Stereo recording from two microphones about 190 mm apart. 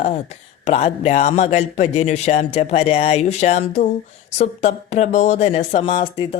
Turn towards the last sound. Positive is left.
turn(degrees=30)  # may be behind; listen again after turning